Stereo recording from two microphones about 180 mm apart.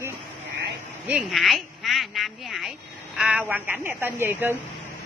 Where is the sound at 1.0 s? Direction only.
5° right (ahead or behind).